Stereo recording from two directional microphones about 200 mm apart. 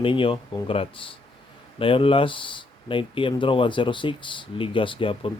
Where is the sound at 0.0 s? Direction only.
25° left (ahead or behind).